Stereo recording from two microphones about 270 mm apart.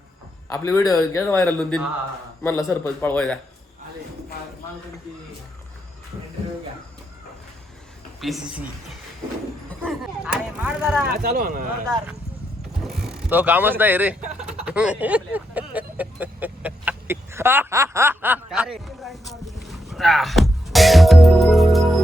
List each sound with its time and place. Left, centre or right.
0.5 s speech: centre
8.2 s speech: centre
9.6 s speech: centre
11.1 s speech: right
12.8 s speech: centre
14.3 s vehicle: centre